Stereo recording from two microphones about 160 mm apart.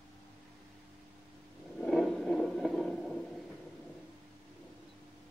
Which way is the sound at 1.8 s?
Centre (ahead or behind).